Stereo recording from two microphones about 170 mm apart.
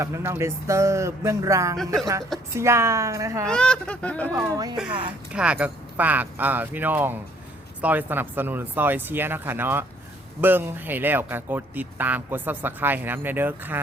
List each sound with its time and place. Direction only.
0.0 s speech: 15° right (ahead or behind)
3.4 s speech: 5° left (ahead or behind)
4.3 s speech: 10° right (ahead or behind)
4.5 s speech: 20° right (ahead or behind)
5.3 s speech: 5° right (ahead or behind)